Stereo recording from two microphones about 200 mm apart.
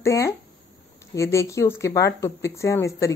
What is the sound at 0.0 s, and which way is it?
Speech, 15° left (ahead or behind).